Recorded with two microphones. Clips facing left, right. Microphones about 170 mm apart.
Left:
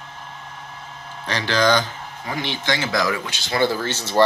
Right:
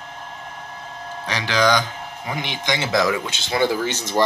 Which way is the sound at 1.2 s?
10° right (ahead or behind).